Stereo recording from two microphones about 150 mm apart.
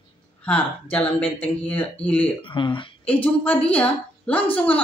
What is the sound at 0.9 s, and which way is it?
Speech, 10° left (ahead or behind).